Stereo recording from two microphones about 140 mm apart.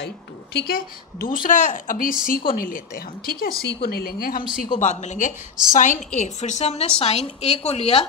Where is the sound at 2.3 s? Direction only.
90° left.